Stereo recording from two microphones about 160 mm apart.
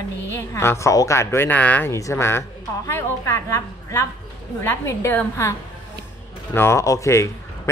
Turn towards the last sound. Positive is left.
turn(degrees=20)  # may be behind; listen again after turning